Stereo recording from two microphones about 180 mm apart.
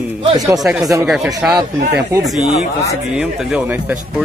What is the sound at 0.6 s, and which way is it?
Speech, centre (ahead or behind).